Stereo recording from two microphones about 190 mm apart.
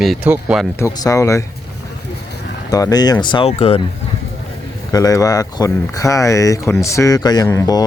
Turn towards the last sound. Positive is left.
turn(degrees=20)  # may be behind; listen again after turning